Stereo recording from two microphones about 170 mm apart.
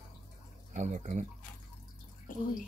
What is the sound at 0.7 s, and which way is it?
Speech, 45° right (ahead or behind).